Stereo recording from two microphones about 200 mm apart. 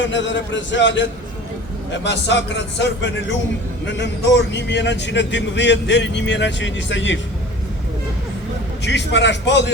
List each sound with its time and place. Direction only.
0.0 s speech: 65° left (ahead or behind)
2.0 s speech: 60° left (ahead or behind)
8.8 s speech: 60° left (ahead or behind)